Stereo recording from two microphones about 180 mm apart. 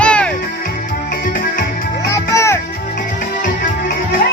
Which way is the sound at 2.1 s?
15° left (ahead or behind).